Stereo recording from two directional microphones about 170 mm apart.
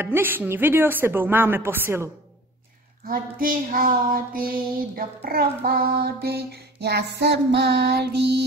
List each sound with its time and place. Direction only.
0.0 s speech: 15° right (ahead or behind)
3.1 s a sound: 55° right (ahead or behind)
4.9 s child singing: 60° right (ahead or behind)